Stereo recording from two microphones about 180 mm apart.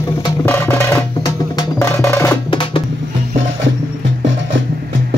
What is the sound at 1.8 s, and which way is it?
Percussion, 15° left (ahead or behind).